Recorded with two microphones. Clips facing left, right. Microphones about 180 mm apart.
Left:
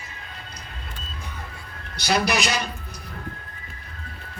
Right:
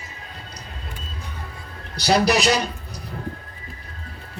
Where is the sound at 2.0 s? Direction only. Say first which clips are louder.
Right 4 dB; 35° right (ahead or behind).